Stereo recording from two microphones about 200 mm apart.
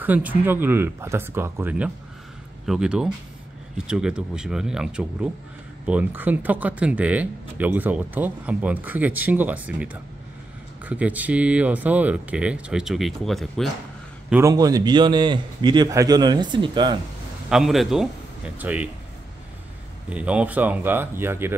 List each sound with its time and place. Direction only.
0.0 s speech: 10° right (ahead or behind)
10.9 s speech: 5° right (ahead or behind)
14.3 s a man's voice: 15° right (ahead or behind)
17.5 s speech: centre (ahead or behind)
20.1 s speech: 5° right (ahead or behind)